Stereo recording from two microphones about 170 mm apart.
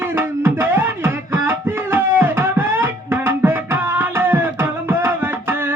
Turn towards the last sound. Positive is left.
turn(degrees=-15)  # may be behind; listen again after turning